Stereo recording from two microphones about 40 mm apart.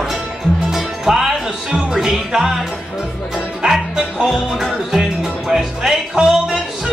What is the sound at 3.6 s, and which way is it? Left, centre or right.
Music, right.